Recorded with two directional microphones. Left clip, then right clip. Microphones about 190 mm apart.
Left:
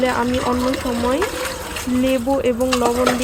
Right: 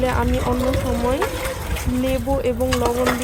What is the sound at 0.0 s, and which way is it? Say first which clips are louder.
Speech: left 2 dB; 15° left (ahead or behind).